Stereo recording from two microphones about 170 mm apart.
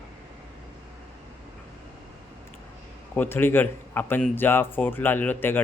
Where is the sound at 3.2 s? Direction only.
15° left (ahead or behind).